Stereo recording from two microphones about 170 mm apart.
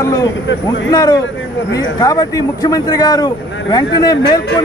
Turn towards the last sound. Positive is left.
turn(degrees=25)  # may be behind; listen again after turning